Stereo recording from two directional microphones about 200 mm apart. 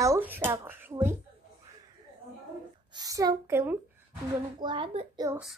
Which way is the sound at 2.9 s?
20° right (ahead or behind).